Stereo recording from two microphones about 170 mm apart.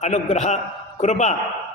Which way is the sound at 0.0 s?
40° left (ahead or behind).